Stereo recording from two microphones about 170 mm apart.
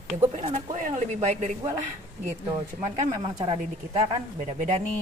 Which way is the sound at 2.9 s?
45° right (ahead or behind).